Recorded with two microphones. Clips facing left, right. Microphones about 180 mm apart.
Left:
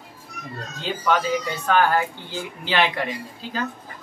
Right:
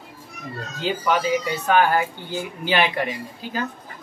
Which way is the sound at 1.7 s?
10° right (ahead or behind).